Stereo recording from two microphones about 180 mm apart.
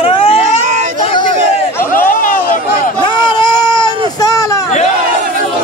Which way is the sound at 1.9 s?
50° left (ahead or behind).